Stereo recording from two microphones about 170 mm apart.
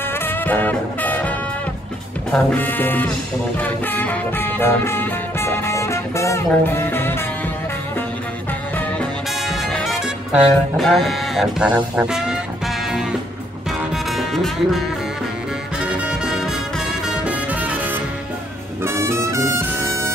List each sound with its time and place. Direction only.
0.2 s music: 10° left (ahead or behind)
2.5 s speech: 10° left (ahead or behind)
3.5 s music: 10° left (ahead or behind)
9.5 s music: centre (ahead or behind)
14.1 s music: centre (ahead or behind)
15.8 s music: 5° right (ahead or behind)
18.8 s music: 15° right (ahead or behind)